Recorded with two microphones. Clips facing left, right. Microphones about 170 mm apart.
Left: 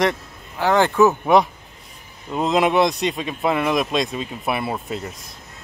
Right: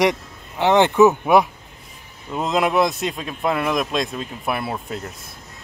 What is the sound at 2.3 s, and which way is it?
Speech, centre (ahead or behind).